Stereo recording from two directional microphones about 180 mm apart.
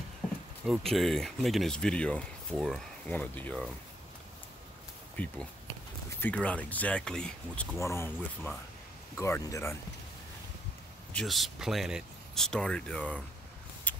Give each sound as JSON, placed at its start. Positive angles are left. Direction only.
{"t": 0.7, "sound": "speech", "side_deg": 0}
{"t": 5.1, "sound": "speech", "side_deg": 10}
{"t": 11.1, "sound": "speech", "side_deg": 0}
{"t": 13.9, "sound": "shuffle", "side_deg": 10}